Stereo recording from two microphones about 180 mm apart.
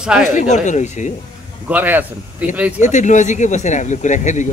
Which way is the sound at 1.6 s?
10° right (ahead or behind).